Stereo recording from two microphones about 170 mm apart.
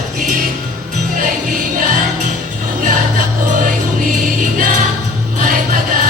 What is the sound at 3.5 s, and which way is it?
Music, 50° right (ahead or behind).